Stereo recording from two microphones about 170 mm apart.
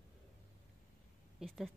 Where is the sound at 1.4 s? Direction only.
5° right (ahead or behind).